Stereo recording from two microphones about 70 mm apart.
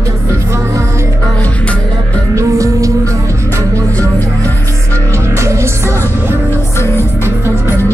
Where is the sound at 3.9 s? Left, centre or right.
Left.